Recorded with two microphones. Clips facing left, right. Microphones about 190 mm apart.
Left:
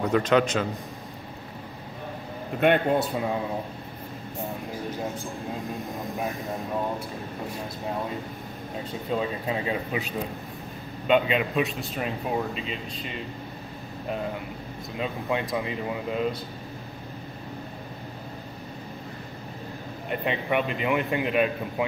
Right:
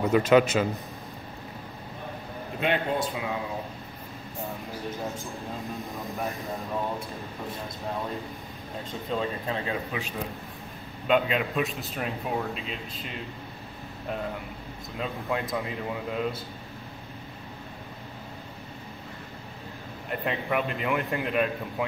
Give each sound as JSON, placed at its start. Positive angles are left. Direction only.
{"t": 0.0, "sound": "a man's voice", "side_deg": -5}
{"t": 2.6, "sound": "speech", "side_deg": 50}
{"t": 6.1, "sound": "a man's voice", "side_deg": 0}
{"t": 9.1, "sound": "speech", "side_deg": 5}
{"t": 11.1, "sound": "a man's voice", "side_deg": 0}
{"t": 15.0, "sound": "a man's voice", "side_deg": 0}
{"t": 20.1, "sound": "a man's voice", "side_deg": 0}